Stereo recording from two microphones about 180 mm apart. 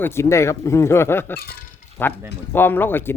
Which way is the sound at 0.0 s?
15° left (ahead or behind).